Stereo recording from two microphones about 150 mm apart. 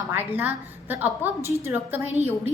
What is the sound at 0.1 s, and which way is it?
A woman's voice, 15° right (ahead or behind).